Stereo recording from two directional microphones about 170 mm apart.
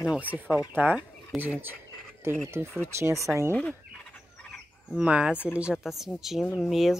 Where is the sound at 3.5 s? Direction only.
5° left (ahead or behind).